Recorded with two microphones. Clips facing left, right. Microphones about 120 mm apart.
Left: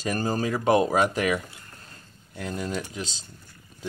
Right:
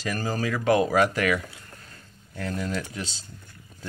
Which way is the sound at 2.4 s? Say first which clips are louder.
Right 1 dB; 15° left (ahead or behind).